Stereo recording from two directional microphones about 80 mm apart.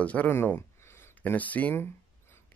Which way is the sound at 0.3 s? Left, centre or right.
Left.